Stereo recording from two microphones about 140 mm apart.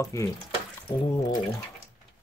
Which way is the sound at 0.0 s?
25° left (ahead or behind).